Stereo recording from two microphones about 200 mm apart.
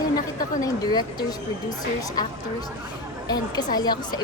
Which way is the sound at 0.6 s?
20° left (ahead or behind).